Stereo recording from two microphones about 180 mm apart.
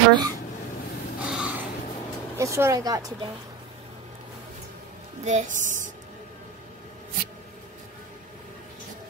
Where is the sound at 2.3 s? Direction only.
15° right (ahead or behind).